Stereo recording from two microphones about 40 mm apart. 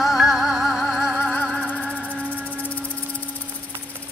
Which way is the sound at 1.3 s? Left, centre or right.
Left.